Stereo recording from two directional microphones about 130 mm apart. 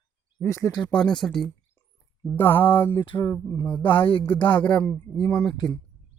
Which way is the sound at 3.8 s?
40° left (ahead or behind).